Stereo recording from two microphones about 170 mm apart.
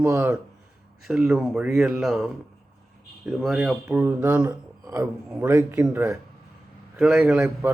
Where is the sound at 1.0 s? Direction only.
5° right (ahead or behind).